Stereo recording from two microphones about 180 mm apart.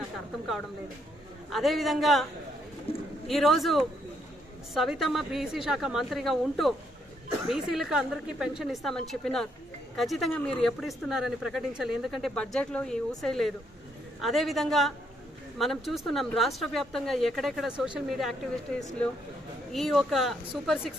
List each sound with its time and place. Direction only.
1.5 s speech: centre (ahead or behind)
2.9 s speech: 30° left (ahead or behind)
3.2 s speech: centre (ahead or behind)